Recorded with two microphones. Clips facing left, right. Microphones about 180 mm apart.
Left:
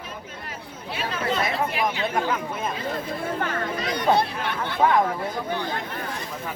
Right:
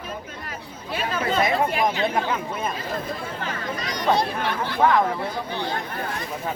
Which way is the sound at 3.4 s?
55° left (ahead or behind).